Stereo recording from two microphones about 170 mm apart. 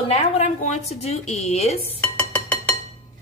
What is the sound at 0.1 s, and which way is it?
A woman's voice, 40° left (ahead or behind).